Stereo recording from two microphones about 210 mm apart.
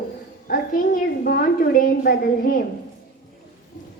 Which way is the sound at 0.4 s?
45° left (ahead or behind).